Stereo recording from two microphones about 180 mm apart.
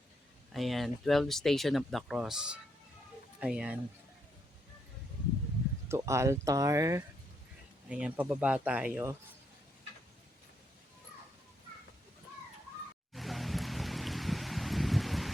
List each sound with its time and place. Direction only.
0.5 s speech: centre (ahead or behind)
5.9 s speech: 15° right (ahead or behind)
7.9 s speech: 5° right (ahead or behind)
13.1 s music: centre (ahead or behind)